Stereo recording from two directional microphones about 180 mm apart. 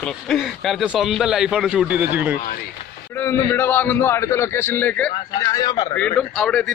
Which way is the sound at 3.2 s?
15° left (ahead or behind).